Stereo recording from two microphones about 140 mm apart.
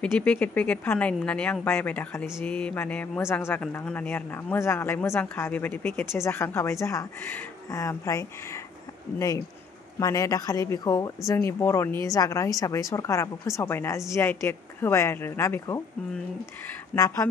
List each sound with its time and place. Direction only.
0.0 s speech: 10° left (ahead or behind)
9.9 s speech: 25° left (ahead or behind)
16.9 s speech: 20° left (ahead or behind)